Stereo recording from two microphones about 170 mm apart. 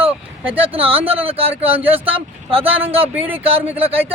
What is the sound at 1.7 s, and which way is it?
Speech, 10° right (ahead or behind).